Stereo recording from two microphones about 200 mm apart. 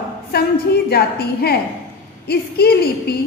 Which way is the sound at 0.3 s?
50° left (ahead or behind).